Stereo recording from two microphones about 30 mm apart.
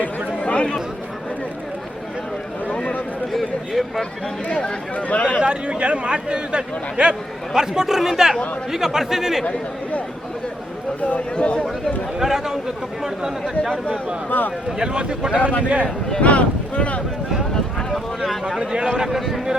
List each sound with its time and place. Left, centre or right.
0.4 s chatter: left
2.6 s a sound: left
3.3 s a sound: centre
4.9 s speech: left
5.4 s speech: right
7.5 s a man's voice: centre
11.3 s a man's voice: left
12.2 s a man's voice: centre
13.4 s speech: centre
14.3 s speech: left
14.8 s speech: right
16.2 s boat: left
18.6 s speech: right
18.9 s a man's voice: centre